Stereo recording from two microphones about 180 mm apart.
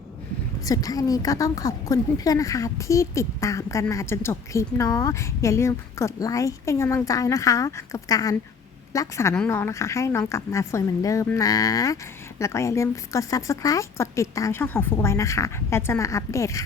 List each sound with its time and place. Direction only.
0.6 s a woman's voice: 20° left (ahead or behind)